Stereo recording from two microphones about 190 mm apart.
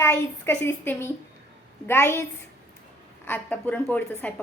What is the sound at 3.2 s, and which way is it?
A woman's voice, 10° left (ahead or behind).